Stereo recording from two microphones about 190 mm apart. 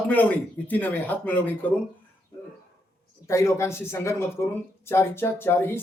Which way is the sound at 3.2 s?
15° left (ahead or behind).